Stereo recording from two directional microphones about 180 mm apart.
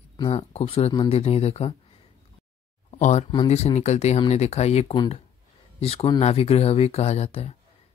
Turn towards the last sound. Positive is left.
turn(degrees=35)  # may be behind; listen again after turning